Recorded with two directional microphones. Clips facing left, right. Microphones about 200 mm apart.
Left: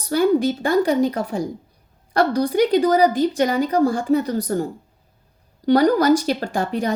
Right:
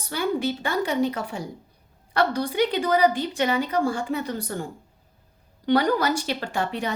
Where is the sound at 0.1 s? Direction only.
40° left (ahead or behind).